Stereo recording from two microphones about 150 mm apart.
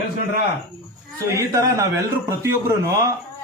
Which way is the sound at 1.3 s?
20° right (ahead or behind).